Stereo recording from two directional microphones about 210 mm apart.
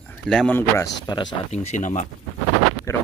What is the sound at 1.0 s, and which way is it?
Speech, 20° left (ahead or behind).